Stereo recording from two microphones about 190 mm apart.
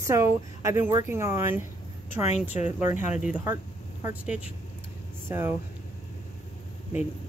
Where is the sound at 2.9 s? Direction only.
40° left (ahead or behind).